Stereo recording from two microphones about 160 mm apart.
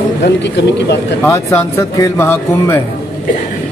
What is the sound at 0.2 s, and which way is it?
Speech, 90° left.